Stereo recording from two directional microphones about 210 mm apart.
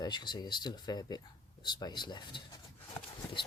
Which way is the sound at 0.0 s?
20° left (ahead or behind).